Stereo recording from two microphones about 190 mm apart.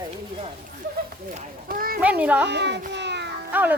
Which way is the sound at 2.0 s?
5° right (ahead or behind).